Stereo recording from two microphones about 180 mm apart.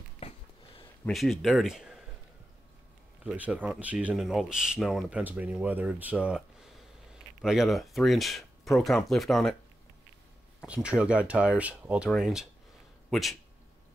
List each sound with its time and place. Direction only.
0.2 s a sound: 30° left (ahead or behind)
1.0 s speech: centre (ahead or behind)
3.3 s speech: 10° right (ahead or behind)
10.6 s speech: 5° right (ahead or behind)